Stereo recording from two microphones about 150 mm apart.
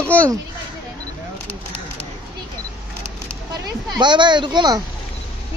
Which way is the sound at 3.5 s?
30° right (ahead or behind).